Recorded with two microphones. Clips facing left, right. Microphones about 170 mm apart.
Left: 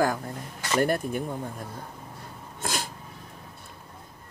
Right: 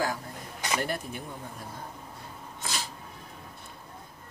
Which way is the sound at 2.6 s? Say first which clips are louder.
Left 5 dB; 50° left (ahead or behind).